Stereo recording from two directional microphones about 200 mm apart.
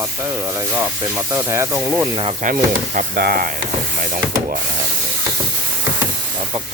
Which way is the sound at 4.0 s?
40° right (ahead or behind).